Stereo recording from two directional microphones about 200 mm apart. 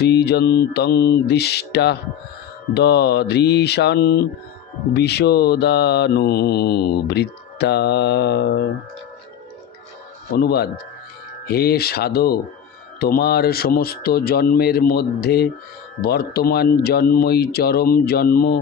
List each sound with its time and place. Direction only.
0.0 s mantra: 55° left (ahead or behind)
10.3 s speech: 50° left (ahead or behind)